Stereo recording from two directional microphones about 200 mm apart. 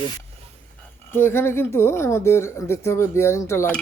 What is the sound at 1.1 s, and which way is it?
Speech, 10° left (ahead or behind).